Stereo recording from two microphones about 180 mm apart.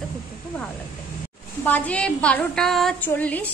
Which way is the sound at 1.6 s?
10° left (ahead or behind).